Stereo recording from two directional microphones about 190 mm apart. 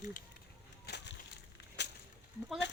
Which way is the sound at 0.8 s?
60° left (ahead or behind).